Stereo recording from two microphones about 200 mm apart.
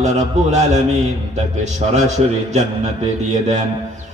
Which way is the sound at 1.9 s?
35° right (ahead or behind).